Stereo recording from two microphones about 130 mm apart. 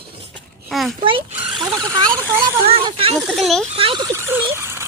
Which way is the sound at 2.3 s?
40° right (ahead or behind).